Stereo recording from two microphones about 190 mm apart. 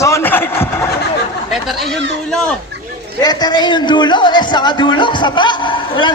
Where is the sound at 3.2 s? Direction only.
20° left (ahead or behind).